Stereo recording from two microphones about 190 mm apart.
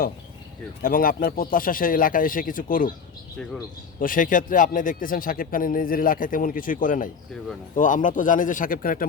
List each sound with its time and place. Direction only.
0.8 s a man's voice: 50° left (ahead or behind)
4.0 s a man's voice: 45° left (ahead or behind)